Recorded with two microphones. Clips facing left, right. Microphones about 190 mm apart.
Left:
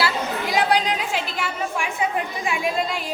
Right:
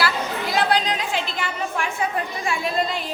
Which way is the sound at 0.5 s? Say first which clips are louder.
Left 1 dB; 10° left (ahead or behind).